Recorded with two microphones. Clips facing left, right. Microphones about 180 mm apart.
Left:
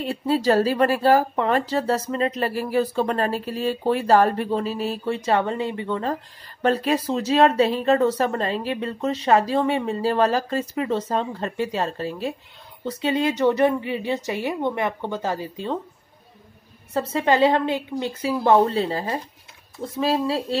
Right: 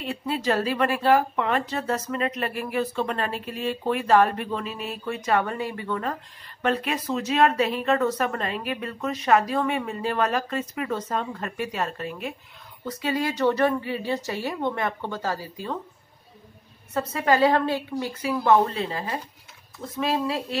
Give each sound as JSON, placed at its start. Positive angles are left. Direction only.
{"t": 0.0, "sound": "a woman's voice", "side_deg": 35}
{"t": 16.9, "sound": "a woman's voice", "side_deg": 25}